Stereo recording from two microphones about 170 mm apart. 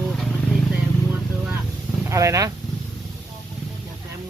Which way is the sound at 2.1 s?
15° right (ahead or behind).